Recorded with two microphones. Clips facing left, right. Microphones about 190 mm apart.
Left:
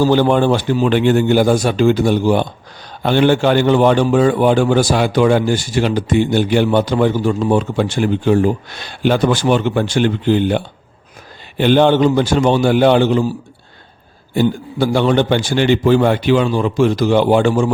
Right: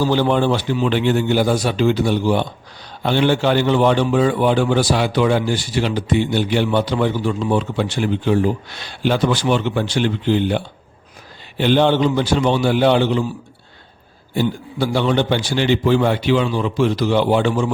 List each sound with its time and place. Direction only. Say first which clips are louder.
0.0 s a man's voice: left 4 dB; 50° left (ahead or behind)
14.3 s a man's voice: left 4 dB; 50° left (ahead or behind)